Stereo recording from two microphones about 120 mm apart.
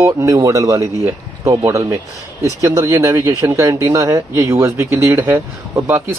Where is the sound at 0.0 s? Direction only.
25° right (ahead or behind).